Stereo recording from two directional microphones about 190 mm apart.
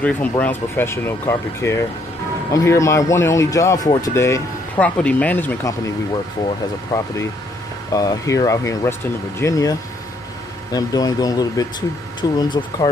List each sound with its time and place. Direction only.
0.0 s speech: 5° left (ahead or behind)
6.9 s speech: 20° left (ahead or behind)